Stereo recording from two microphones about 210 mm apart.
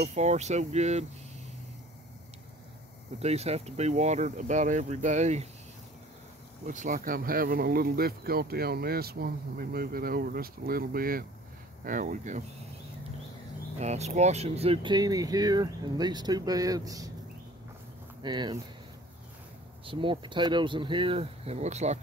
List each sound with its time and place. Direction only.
0.1 s speech: 35° right (ahead or behind)
3.2 s speech: 30° right (ahead or behind)
6.6 s speech: 35° right (ahead or behind)
13.7 s speech: 30° right (ahead or behind); by 17.1 s 15° right (ahead or behind)
18.2 s speech: 20° right (ahead or behind)
19.8 s speech: 25° right (ahead or behind)